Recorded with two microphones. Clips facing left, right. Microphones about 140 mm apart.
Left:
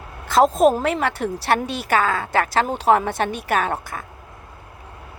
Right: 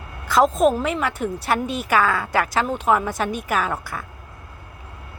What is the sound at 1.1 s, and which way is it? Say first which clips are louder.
Speech: left 2 dB; 80° left.